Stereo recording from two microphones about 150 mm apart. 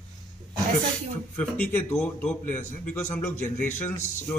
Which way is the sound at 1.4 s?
10° left (ahead or behind).